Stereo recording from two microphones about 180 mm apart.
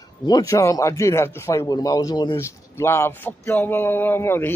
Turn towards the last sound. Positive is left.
turn(degrees=15)  # may be behind; listen again after turning